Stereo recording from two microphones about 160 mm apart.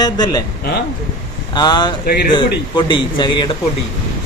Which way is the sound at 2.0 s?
75° left (ahead or behind).